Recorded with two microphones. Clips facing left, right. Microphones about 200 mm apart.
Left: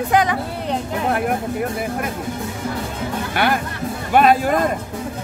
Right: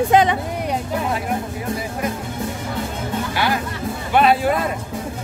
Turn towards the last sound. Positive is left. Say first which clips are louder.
# left 1 dB
turn(degrees=45)  # may be behind; listen again after turning